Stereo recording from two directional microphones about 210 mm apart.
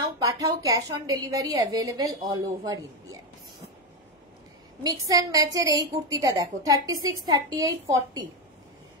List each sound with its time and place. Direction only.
0.2 s a woman's voice: 15° right (ahead or behind)
4.8 s a woman's voice: 15° right (ahead or behind)